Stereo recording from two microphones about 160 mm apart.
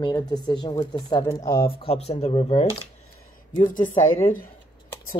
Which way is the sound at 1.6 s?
35° left (ahead or behind).